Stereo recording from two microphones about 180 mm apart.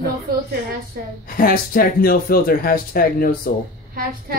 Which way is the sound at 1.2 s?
55° left (ahead or behind).